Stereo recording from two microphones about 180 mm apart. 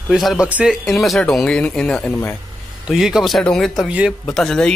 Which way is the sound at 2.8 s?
Centre (ahead or behind).